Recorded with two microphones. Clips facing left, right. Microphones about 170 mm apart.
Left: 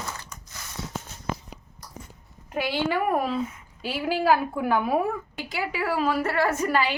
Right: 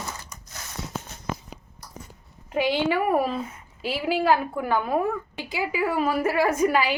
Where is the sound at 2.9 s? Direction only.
5° right (ahead or behind).